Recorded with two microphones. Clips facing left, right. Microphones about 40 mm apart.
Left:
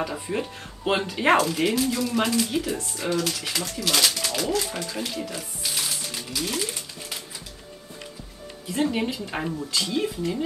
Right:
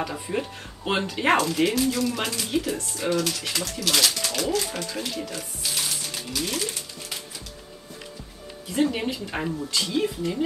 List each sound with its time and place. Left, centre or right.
0.0 s speech: centre
8.6 s speech: centre